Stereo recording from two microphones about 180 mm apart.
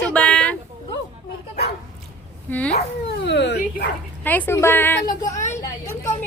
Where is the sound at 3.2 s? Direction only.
75° left (ahead or behind).